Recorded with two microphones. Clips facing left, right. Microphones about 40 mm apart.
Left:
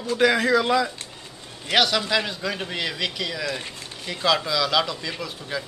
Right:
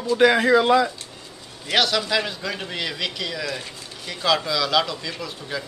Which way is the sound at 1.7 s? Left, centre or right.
Centre.